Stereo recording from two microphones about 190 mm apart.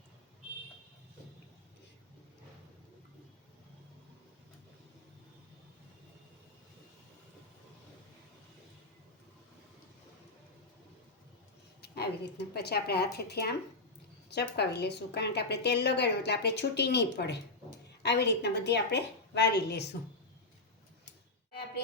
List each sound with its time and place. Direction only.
11.8 s a woman's voice: 60° left (ahead or behind)